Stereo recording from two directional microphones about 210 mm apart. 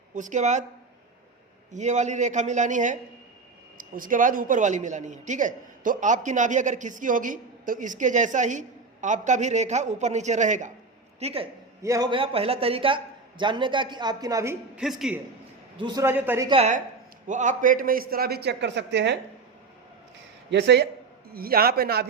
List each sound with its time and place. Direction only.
0.1 s a man's voice: 35° right (ahead or behind)
1.7 s a man's voice: 35° right (ahead or behind)
11.8 s a woman's voice: 15° right (ahead or behind)
15.8 s a man's voice: 15° right (ahead or behind)
16.5 s a man's voice: 30° right (ahead or behind); by 19.1 s 60° right (ahead or behind)
20.5 s a man's voice: 55° right (ahead or behind)